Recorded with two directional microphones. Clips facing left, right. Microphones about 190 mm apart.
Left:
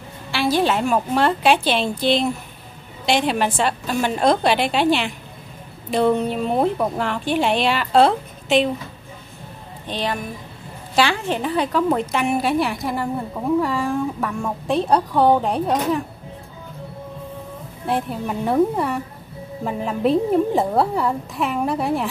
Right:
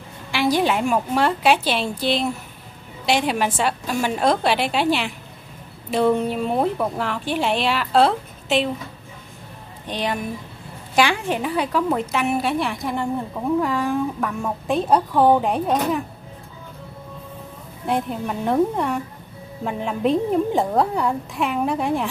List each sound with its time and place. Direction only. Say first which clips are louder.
0.3 s a woman's voice: even; 15° right (ahead or behind)
9.8 s a woman's voice: even; 15° right (ahead or behind); by 16.0 s centre (ahead or behind)
17.8 s a woman's voice: even; centre (ahead or behind)